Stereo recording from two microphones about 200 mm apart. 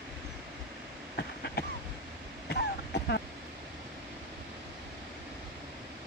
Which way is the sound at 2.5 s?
55° left (ahead or behind).